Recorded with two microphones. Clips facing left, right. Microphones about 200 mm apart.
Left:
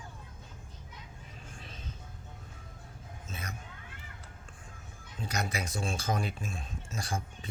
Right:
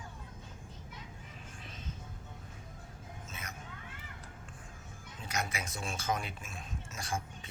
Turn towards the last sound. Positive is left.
turn(degrees=35)  # may be behind; listen again after turning